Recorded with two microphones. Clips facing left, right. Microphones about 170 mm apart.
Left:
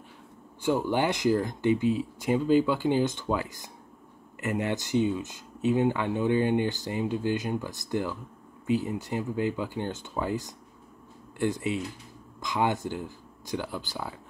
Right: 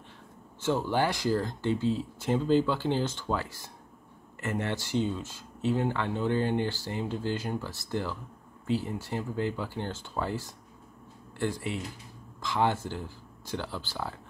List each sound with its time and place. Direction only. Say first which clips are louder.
0.6 s speech: left 2 dB; 15° left (ahead or behind)